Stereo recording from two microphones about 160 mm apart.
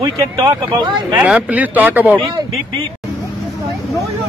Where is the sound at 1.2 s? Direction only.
10° right (ahead or behind).